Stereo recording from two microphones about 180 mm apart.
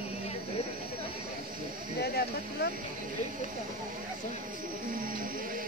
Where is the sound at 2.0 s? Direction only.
65° left (ahead or behind).